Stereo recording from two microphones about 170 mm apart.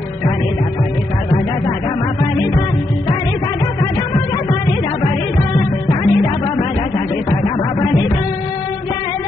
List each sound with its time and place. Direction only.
5.0 s music: 25° left (ahead or behind)